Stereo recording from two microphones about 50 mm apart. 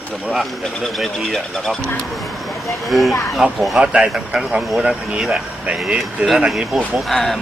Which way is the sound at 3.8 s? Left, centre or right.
Centre.